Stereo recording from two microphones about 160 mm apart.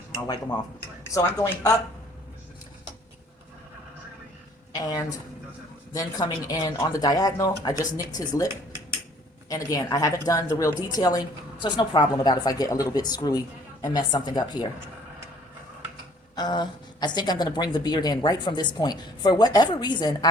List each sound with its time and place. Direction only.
0.3 s a woman's voice: 25° left (ahead or behind)
4.7 s a woman's voice: 25° left (ahead or behind)
9.5 s a woman's voice: 20° left (ahead or behind)
16.3 s a woman's voice: 25° left (ahead or behind)